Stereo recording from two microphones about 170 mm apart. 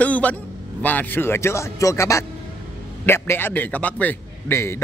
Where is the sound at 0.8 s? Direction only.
10° left (ahead or behind).